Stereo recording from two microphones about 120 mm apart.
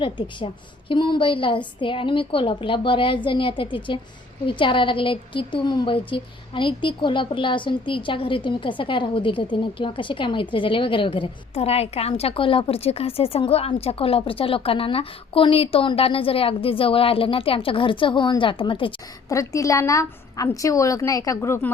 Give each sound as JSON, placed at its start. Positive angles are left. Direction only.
{"t": 0.0, "sound": "a woman's voice", "side_deg": 45}
{"t": 19.3, "sound": "a woman's voice", "side_deg": 25}